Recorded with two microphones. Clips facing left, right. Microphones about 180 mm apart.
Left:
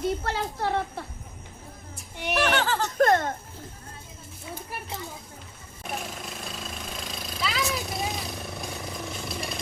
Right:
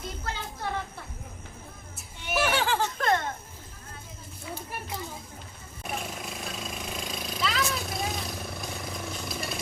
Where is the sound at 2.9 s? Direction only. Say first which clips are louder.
Left 11 dB; 45° left (ahead or behind).